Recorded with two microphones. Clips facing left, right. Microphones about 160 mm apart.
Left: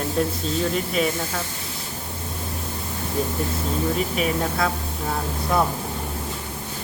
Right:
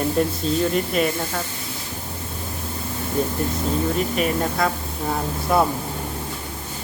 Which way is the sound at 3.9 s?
Centre (ahead or behind).